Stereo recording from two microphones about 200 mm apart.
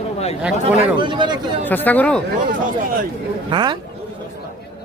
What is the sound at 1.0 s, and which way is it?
Speech, 25° right (ahead or behind).